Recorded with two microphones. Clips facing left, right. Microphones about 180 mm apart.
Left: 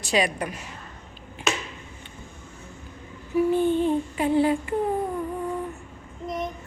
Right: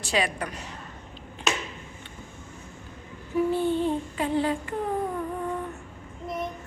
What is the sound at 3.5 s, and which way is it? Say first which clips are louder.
A woman's voice: left 5 dB; 15° left (ahead or behind).